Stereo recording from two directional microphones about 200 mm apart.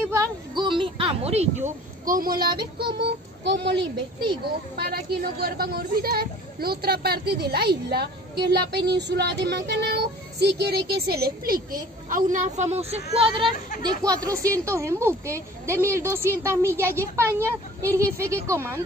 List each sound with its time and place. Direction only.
0.1 s a sound: 20° right (ahead or behind); by 2.6 s 50° right (ahead or behind)
2.8 s speech: 55° right (ahead or behind)
4.7 s a woman's voice: 50° right (ahead or behind); by 13.0 s 35° right (ahead or behind)
13.8 s speech: 20° right (ahead or behind)